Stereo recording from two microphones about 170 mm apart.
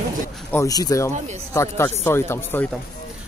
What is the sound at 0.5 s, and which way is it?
Speech, 20° left (ahead or behind).